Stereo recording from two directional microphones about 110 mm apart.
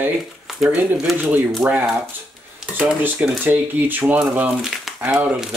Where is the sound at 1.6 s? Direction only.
20° right (ahead or behind).